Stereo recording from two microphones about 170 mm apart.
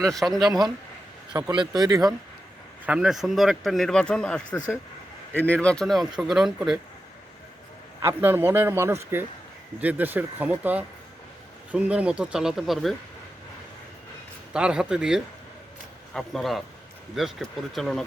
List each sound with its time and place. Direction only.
0.0 s speech: centre (ahead or behind)
1.5 s speech: 25° right (ahead or behind)
2.8 s speech: 5° right (ahead or behind)
4.5 s speech: 20° left (ahead or behind)
5.3 s speech: 10° left (ahead or behind)
8.0 s a man's voice: 10° right (ahead or behind)
14.5 s speech: 5° right (ahead or behind)